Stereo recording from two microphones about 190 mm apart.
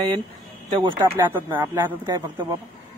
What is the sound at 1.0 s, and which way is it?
Speech, 15° right (ahead or behind).